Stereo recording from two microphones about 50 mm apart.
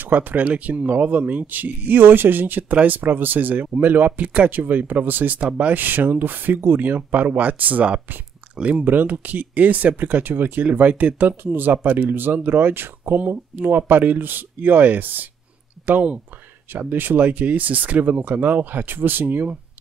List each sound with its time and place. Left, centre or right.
0.0 s speech: right
5.4 s speech: right
8.8 s speech: right